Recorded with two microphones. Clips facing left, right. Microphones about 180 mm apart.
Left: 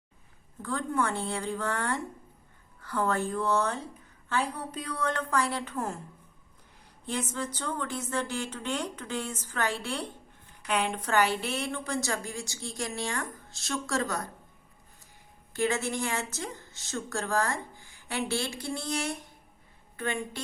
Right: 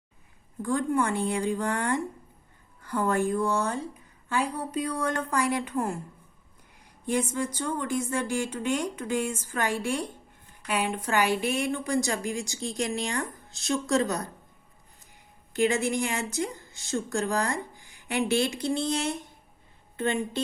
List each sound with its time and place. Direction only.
0.6 s a woman's voice: 15° right (ahead or behind)
7.0 s a woman's voice: 15° right (ahead or behind)
15.5 s a woman's voice: 15° right (ahead or behind)